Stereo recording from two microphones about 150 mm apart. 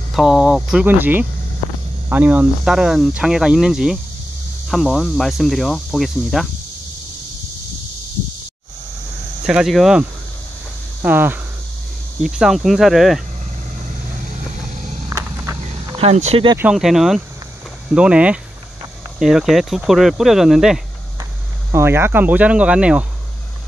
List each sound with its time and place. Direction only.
0.1 s speech: centre (ahead or behind)
0.8 s speech: 15° right (ahead or behind)
9.5 s speech: centre (ahead or behind)
11.0 s speech: 15° right (ahead or behind)
15.0 s a sound: 20° right (ahead or behind)
16.0 s speech: 45° right (ahead or behind)
16.5 s speech: 5° right (ahead or behind)
21.7 s speech: 15° right (ahead or behind)